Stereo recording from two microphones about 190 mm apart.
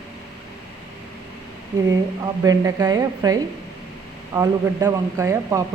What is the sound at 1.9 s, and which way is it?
A woman's voice, 20° right (ahead or behind).